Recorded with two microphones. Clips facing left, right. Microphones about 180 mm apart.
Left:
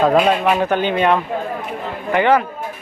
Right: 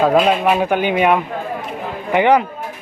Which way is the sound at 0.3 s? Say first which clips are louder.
Right 1 dB; 10° right (ahead or behind).